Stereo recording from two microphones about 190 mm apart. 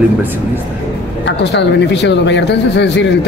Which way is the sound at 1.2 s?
65° left (ahead or behind).